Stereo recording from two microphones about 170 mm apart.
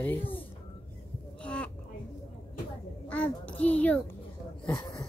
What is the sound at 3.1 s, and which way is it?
Speech, 10° left (ahead or behind).